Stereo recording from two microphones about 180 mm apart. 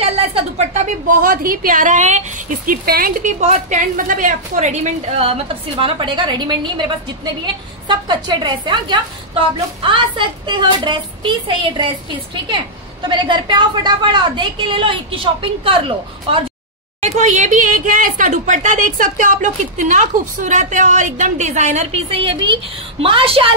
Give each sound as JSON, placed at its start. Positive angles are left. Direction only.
{"t": 0.0, "sound": "a woman's voice", "side_deg": -35}
{"t": 7.9, "sound": "a woman's voice", "side_deg": -25}
{"t": 17.0, "sound": "a woman's voice", "side_deg": -40}